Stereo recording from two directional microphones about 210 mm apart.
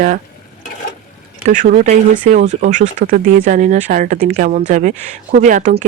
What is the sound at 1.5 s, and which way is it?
Speech, 35° right (ahead or behind).